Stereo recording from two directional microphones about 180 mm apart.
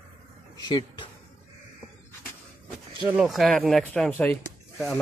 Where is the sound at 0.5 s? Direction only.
25° left (ahead or behind).